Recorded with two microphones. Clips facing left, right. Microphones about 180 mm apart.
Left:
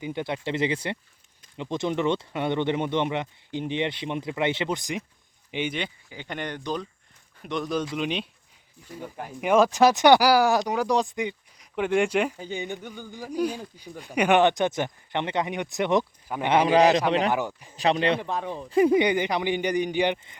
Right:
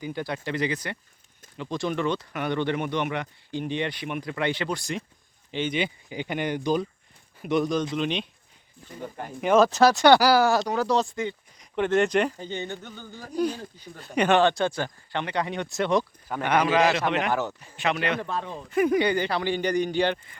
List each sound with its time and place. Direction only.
0.0 s speech: 25° left (ahead or behind)
6.1 s speech: 15° right (ahead or behind)
7.9 s speech: 10° left (ahead or behind); by 17.0 s 35° left (ahead or behind)
17.2 s speech: 15° left (ahead or behind)
17.7 s speech: 35° left (ahead or behind)
18.2 s speech: 15° left (ahead or behind)
18.7 s speech: 25° left (ahead or behind)